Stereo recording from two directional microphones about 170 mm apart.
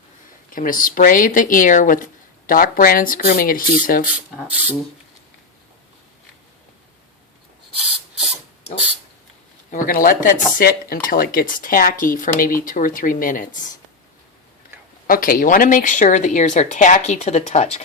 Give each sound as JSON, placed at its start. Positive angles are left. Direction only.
{"t": 0.5, "sound": "speech", "side_deg": 55}
{"t": 9.7, "sound": "speech", "side_deg": 55}
{"t": 15.0, "sound": "speech", "side_deg": 55}